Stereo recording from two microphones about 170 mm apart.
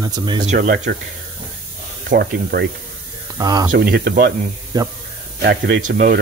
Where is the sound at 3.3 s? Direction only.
25° right (ahead or behind).